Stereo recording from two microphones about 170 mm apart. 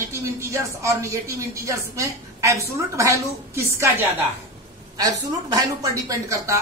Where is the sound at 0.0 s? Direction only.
15° right (ahead or behind).